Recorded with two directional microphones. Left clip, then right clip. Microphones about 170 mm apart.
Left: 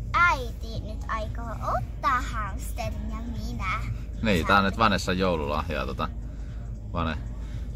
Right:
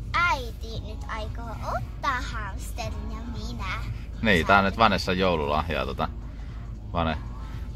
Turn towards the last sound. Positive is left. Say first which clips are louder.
# right 3 dB
turn(degrees=-25)  # may be behind; listen again after turning